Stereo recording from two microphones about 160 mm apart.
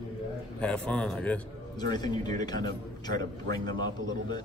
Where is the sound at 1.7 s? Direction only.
25° left (ahead or behind).